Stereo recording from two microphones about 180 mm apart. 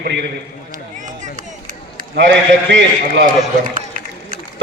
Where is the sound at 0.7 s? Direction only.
45° right (ahead or behind).